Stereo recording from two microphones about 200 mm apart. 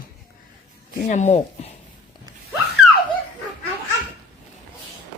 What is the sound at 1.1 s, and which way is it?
Speech, 35° left (ahead or behind).